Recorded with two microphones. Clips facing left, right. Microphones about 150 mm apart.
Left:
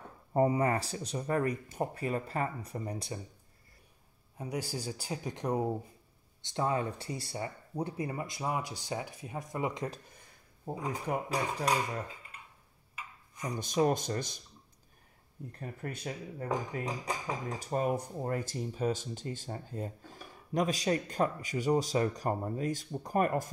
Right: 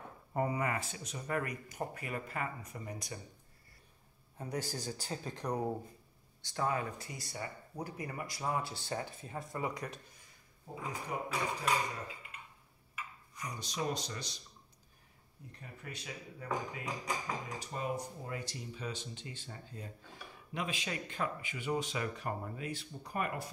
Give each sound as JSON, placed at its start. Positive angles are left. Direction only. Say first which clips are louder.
{"t": 0.3, "sound": "speech", "louder": "left 7 dB", "side_deg": 30}
{"t": 4.4, "sound": "speech", "louder": "left 2 dB", "side_deg": 10}
{"t": 11.1, "sound": "speech", "louder": "left 4 dB", "side_deg": 40}
{"t": 13.4, "sound": "speech", "louder": "left 10 dB", "side_deg": 50}
{"t": 15.6, "sound": "speech", "louder": "left 8 dB", "side_deg": 50}
{"t": 17.6, "sound": "speech", "louder": "left 10 dB", "side_deg": 50}